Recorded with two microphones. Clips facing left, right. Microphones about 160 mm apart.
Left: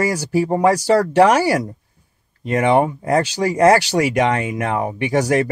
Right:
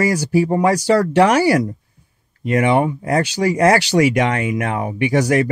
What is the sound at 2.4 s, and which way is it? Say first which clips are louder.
Speech: even; 35° left (ahead or behind).